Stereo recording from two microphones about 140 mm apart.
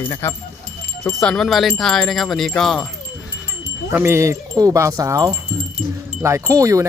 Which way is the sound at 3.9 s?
15° right (ahead or behind).